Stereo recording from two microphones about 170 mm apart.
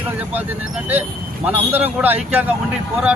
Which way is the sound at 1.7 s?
10° right (ahead or behind).